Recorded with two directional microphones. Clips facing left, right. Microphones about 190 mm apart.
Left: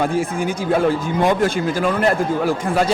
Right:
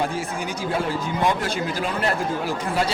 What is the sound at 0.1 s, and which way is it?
Speech, 50° left (ahead or behind).